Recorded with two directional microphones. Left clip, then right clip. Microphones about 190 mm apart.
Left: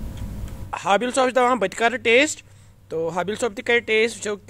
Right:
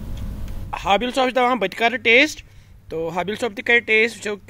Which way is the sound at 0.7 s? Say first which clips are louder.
Right 1 dB; 5° right (ahead or behind).